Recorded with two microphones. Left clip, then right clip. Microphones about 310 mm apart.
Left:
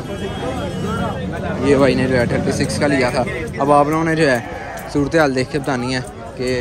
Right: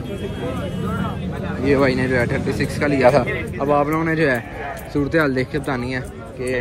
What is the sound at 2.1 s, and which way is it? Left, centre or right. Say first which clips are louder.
Speech: left 3 dB; left.